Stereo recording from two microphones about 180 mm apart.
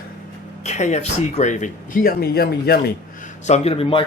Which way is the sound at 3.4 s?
35° left (ahead or behind).